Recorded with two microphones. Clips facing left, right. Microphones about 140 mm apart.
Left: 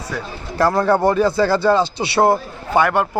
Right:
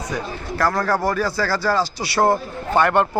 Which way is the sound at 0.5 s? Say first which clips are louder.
Left 5 dB; 25° left (ahead or behind).